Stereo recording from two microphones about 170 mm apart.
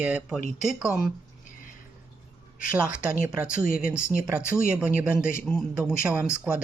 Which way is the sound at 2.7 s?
10° right (ahead or behind).